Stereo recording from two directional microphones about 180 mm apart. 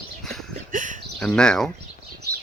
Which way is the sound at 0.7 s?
45° right (ahead or behind).